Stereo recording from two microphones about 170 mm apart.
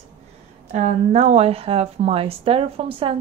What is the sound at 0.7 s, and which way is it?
A woman's voice, 40° right (ahead or behind).